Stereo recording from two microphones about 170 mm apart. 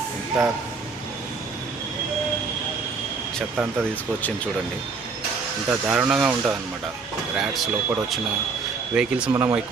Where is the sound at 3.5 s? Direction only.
10° right (ahead or behind).